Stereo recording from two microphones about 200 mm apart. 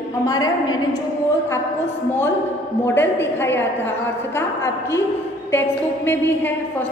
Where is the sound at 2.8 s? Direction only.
10° left (ahead or behind).